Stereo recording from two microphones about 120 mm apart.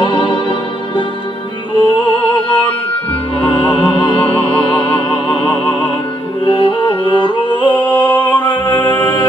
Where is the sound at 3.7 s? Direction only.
45° left (ahead or behind).